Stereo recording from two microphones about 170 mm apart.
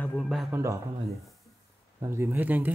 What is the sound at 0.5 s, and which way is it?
Speech, 15° right (ahead or behind).